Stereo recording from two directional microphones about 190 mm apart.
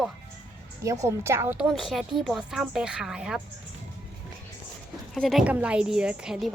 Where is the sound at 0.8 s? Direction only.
15° right (ahead or behind).